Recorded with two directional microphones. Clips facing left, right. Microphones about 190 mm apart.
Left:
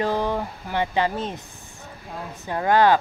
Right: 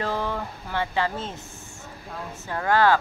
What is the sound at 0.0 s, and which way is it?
Speech, 15° left (ahead or behind).